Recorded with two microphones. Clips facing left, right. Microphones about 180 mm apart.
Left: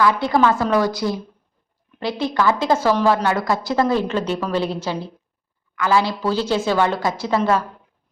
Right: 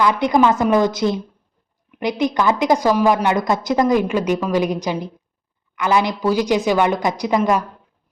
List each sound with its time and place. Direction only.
0.0 s a woman's voice: 20° right (ahead or behind)